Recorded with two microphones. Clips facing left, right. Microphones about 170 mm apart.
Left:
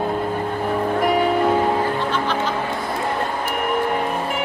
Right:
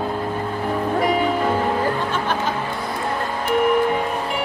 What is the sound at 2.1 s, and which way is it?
Music, 50° right (ahead or behind).